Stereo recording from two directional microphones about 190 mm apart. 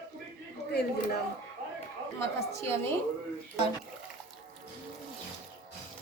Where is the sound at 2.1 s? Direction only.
15° left (ahead or behind).